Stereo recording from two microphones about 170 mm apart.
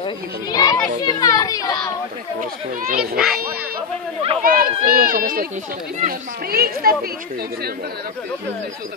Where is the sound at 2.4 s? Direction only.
55° right (ahead or behind).